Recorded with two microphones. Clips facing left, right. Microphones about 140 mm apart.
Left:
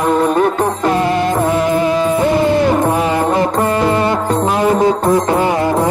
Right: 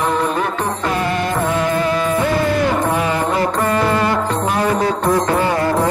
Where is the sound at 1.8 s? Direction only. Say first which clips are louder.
Left 4 dB; 25° left (ahead or behind).